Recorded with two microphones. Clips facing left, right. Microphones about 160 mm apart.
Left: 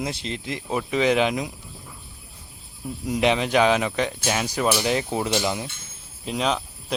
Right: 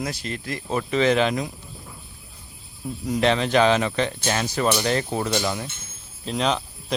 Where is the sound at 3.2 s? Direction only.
15° left (ahead or behind).